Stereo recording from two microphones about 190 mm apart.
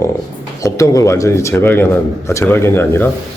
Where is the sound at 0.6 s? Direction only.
15° left (ahead or behind).